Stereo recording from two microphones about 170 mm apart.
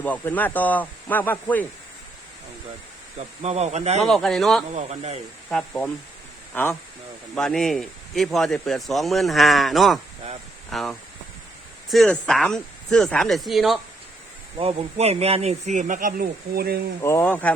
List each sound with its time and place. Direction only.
0.0 s speech: 10° left (ahead or behind)
3.2 s speech: 40° right (ahead or behind)
4.0 s speech: centre (ahead or behind)
4.7 s speech: 40° right (ahead or behind)
5.5 s speech: 5° left (ahead or behind)
14.6 s speech: 35° right (ahead or behind); by 16.8 s 65° right (ahead or behind)
17.0 s speech: 15° left (ahead or behind)